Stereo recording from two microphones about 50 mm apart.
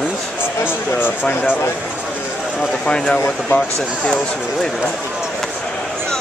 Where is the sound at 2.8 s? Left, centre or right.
Centre.